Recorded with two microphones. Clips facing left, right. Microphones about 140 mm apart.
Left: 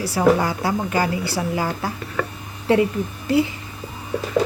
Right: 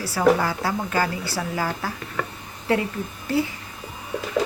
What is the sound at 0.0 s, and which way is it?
A woman's voice, 20° left (ahead or behind).